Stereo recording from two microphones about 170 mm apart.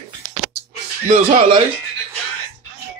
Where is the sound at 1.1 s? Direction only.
35° right (ahead or behind).